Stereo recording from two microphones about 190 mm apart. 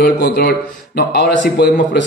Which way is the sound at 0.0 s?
60° left (ahead or behind).